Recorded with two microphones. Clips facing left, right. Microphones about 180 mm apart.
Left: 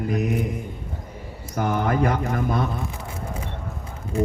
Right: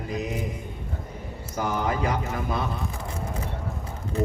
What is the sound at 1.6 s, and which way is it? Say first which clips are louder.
Speech: left 4 dB; 50° left (ahead or behind).